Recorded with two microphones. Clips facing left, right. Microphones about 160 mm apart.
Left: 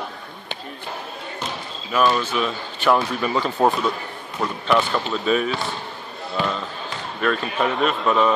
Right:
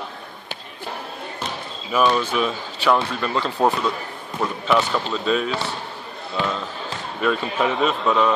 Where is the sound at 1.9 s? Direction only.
5° right (ahead or behind).